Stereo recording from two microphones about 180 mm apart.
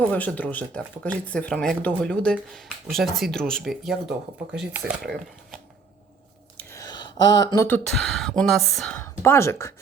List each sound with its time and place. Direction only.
0.1 s speech: 10° left (ahead or behind)
6.6 s a sound: 15° left (ahead or behind)
7.9 s speech: centre (ahead or behind)
9.2 s speech: 15° left (ahead or behind)